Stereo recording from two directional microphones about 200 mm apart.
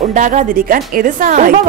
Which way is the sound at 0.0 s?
40° right (ahead or behind).